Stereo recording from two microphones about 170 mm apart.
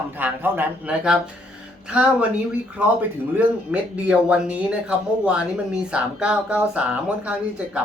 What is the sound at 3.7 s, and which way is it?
Speech, 5° right (ahead or behind).